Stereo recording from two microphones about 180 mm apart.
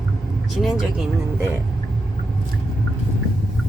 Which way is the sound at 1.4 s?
15° right (ahead or behind).